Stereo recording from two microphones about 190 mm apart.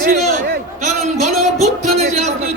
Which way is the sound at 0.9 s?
35° right (ahead or behind).